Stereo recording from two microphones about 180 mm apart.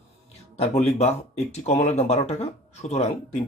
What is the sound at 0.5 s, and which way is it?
Speech, 35° left (ahead or behind).